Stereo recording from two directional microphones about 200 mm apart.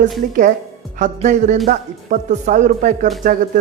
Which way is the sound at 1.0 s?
35° right (ahead or behind).